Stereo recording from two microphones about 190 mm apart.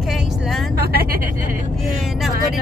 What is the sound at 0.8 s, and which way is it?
Speech, 50° right (ahead or behind).